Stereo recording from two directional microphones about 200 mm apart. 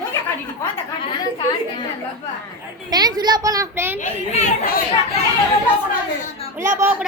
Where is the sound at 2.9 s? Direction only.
20° right (ahead or behind).